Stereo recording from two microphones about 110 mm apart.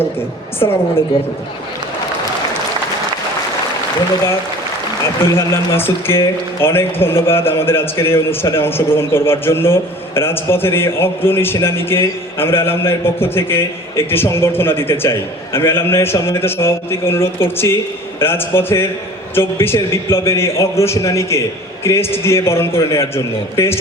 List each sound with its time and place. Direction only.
0.6 s a woman's voice: 40° left (ahead or behind)
5.3 s speech: 20° left (ahead or behind)